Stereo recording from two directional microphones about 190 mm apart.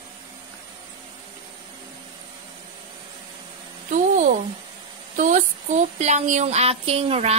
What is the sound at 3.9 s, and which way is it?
A woman's voice, 45° right (ahead or behind).